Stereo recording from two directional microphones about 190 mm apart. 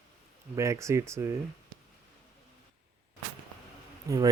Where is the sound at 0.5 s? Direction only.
15° right (ahead or behind).